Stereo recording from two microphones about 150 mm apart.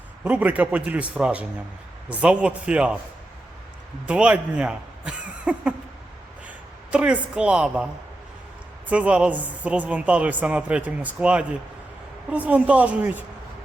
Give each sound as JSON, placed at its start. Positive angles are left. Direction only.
{"t": 0.3, "sound": "a woman's voice", "side_deg": -10}
{"t": 4.0, "sound": "a woman's voice", "side_deg": -5}
{"t": 6.9, "sound": "a woman's voice", "side_deg": -10}
{"t": 8.9, "sound": "a woman's voice", "side_deg": -10}